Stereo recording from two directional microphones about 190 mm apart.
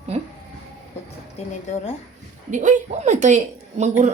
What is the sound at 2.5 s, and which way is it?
Speech, 40° right (ahead or behind).